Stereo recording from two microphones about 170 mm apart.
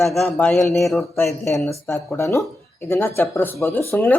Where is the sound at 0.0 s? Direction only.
Centre (ahead or behind).